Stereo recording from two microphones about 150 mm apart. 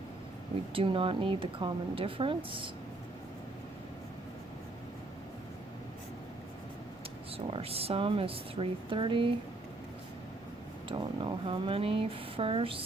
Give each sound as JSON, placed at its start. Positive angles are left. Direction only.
{"t": 0.7, "sound": "speech", "side_deg": -35}
{"t": 7.3, "sound": "speech", "side_deg": -40}
{"t": 10.8, "sound": "speech", "side_deg": -30}